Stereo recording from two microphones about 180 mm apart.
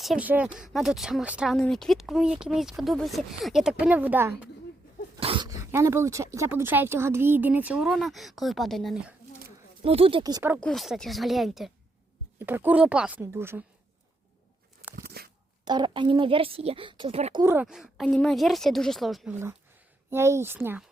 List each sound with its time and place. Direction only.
0.0 s speech: 5° right (ahead or behind)
5.2 s a sound: 30° right (ahead or behind)
5.5 s a woman's voice: 15° right (ahead or behind); by 9.1 s centre (ahead or behind)
9.8 s a woman's voice: 30° right (ahead or behind)
10.6 s a woman's voice: centre (ahead or behind)
14.9 s a sound: 60° right (ahead or behind)
15.6 s a woman's voice: 25° right (ahead or behind)
17.4 s speech: 10° right (ahead or behind)
19.3 s a woman's voice: 15° right (ahead or behind)